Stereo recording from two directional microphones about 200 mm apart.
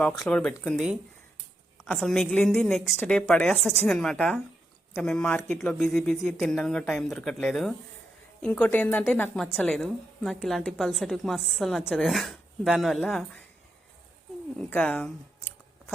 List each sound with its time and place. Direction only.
0.0 s a woman's voice: 5° left (ahead or behind)
14.7 s a woman's voice: 5° left (ahead or behind)